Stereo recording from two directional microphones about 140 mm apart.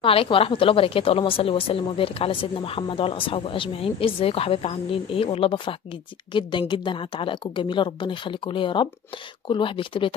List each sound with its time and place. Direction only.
0.0 s a woman's voice: 40° left (ahead or behind)